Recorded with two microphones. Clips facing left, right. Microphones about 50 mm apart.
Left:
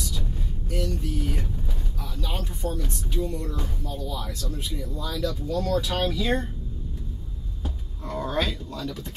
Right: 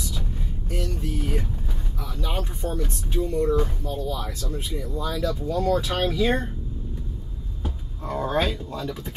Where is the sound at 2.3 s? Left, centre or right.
Right; by 6.3 s centre.